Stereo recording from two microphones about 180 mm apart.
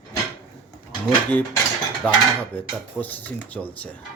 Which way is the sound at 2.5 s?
10° left (ahead or behind).